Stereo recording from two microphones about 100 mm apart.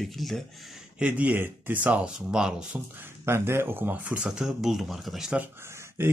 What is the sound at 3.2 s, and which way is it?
Speech, 25° right (ahead or behind).